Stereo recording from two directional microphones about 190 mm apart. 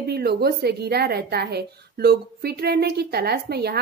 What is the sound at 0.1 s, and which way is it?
A woman's voice, 55° right (ahead or behind).